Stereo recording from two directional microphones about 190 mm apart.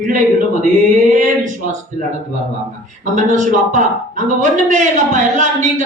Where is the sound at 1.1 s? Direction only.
45° right (ahead or behind).